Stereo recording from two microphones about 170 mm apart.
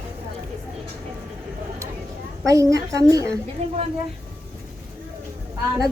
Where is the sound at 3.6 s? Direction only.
40° right (ahead or behind).